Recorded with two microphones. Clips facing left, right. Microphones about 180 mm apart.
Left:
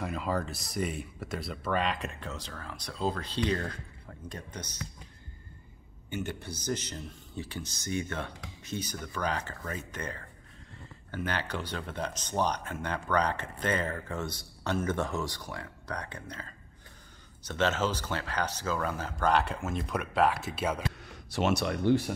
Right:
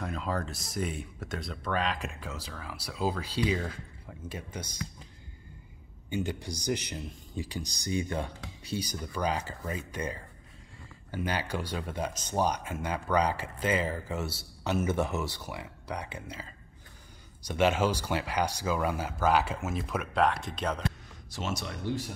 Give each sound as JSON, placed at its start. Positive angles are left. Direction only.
{"t": 0.0, "sound": "speech", "side_deg": 5}
{"t": 6.0, "sound": "speech", "side_deg": -15}
{"t": 21.1, "sound": "speech", "side_deg": 65}